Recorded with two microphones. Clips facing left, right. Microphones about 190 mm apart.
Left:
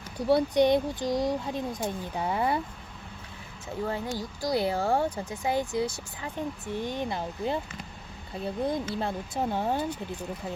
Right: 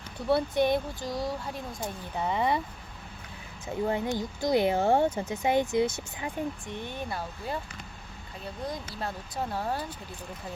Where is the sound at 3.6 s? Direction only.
20° right (ahead or behind).